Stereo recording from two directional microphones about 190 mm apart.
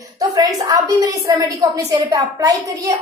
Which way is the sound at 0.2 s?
20° right (ahead or behind).